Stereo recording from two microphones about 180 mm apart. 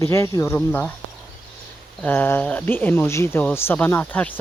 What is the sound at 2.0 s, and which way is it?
Speech, 10° left (ahead or behind).